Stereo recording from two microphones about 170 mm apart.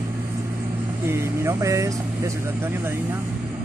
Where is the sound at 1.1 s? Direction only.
15° right (ahead or behind).